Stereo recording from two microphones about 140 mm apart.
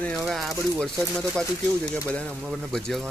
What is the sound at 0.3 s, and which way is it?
Speech, centre (ahead or behind).